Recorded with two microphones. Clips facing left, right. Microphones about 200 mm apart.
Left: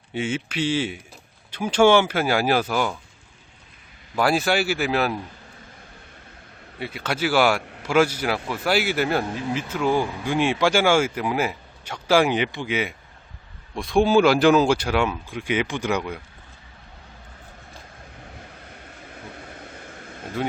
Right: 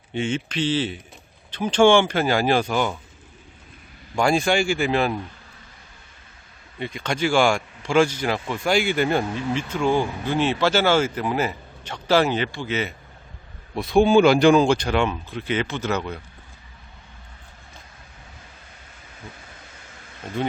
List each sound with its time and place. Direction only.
0.1 s speech: 5° left (ahead or behind)
4.1 s speech: 5° left (ahead or behind)
6.7 s speech: 5° left (ahead or behind)
13.7 s speech: centre (ahead or behind)
19.1 s vehicle: 55° left (ahead or behind)